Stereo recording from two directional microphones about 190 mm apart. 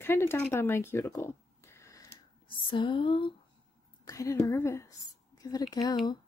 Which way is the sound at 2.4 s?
25° left (ahead or behind).